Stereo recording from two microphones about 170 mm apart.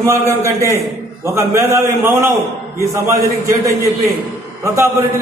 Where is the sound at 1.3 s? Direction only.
15° right (ahead or behind).